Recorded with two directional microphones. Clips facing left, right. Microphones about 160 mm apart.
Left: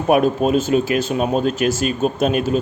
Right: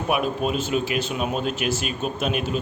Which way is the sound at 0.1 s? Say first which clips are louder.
Left 9 dB; 40° left (ahead or behind).